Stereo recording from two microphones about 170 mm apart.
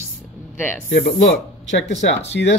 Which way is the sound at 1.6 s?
90° left.